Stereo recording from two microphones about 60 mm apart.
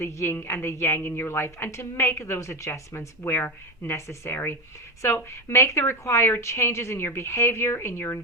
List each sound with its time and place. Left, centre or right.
0.0 s a woman's voice: left
3.2 s speech: left
3.9 s a woman's voice: left